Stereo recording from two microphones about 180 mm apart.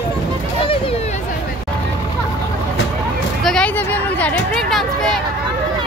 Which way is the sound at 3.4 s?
5° left (ahead or behind).